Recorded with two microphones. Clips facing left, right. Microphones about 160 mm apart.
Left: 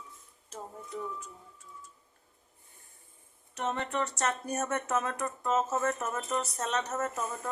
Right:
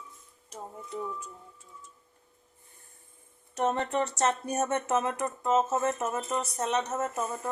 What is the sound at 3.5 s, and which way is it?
Speech, 40° right (ahead or behind).